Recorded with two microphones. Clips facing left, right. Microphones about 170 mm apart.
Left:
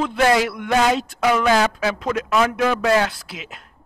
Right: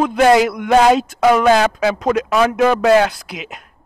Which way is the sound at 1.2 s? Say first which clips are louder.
Right 5 dB; 50° right (ahead or behind).